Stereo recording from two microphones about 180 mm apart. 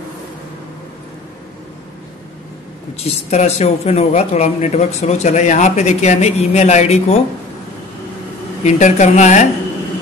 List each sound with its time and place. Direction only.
3.0 s speech: 35° left (ahead or behind)
8.6 s speech: 40° left (ahead or behind)